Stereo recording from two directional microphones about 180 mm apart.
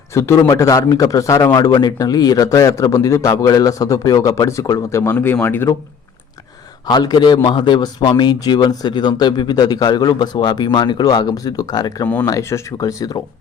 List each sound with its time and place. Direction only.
0.1 s a man's voice: 15° left (ahead or behind)
6.8 s a man's voice: 20° left (ahead or behind)